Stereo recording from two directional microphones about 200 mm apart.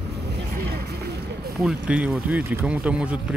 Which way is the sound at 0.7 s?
55° right (ahead or behind).